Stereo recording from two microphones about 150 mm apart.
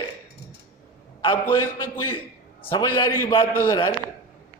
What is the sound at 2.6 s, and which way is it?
A man's voice, 35° left (ahead or behind).